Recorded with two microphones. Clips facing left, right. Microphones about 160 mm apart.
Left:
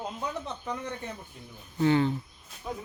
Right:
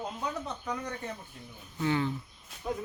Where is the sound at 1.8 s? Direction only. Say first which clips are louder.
Left 6 dB; 30° left (ahead or behind).